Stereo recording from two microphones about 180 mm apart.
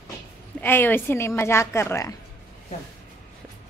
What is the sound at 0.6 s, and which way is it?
A woman's voice, 10° left (ahead or behind).